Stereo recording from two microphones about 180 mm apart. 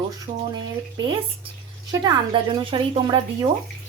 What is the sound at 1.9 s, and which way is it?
Speech, 20° right (ahead or behind).